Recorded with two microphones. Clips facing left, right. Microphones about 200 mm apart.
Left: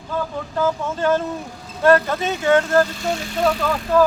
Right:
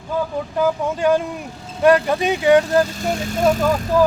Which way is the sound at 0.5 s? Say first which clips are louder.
Right 2 dB; 15° right (ahead or behind).